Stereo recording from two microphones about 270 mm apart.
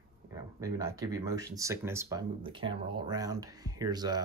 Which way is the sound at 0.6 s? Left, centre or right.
Centre.